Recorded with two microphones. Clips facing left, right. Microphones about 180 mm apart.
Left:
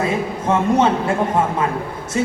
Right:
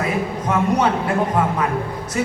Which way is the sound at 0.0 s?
25° left (ahead or behind).